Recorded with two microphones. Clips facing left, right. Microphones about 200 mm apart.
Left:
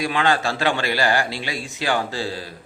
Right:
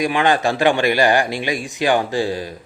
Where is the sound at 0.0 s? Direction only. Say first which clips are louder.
Right 4 dB; 15° right (ahead or behind).